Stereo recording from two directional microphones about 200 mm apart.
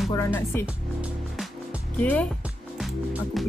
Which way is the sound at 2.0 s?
10° left (ahead or behind).